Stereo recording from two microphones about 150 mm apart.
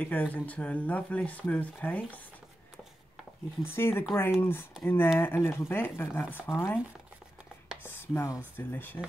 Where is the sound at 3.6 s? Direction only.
15° left (ahead or behind).